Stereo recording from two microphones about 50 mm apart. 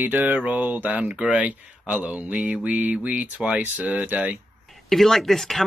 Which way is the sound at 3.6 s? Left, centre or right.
Right.